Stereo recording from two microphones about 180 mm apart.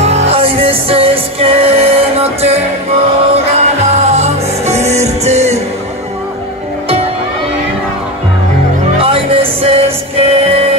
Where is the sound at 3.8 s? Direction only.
40° right (ahead or behind).